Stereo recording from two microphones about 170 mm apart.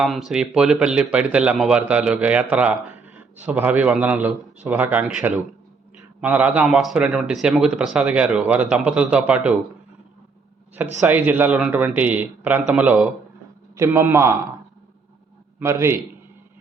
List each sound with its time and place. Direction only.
0.0 s speech: centre (ahead or behind)
11.0 s speech: 10° right (ahead or behind)
15.5 s a man's voice: 15° right (ahead or behind)